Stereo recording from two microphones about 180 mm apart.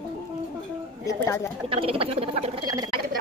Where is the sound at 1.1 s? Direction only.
15° left (ahead or behind).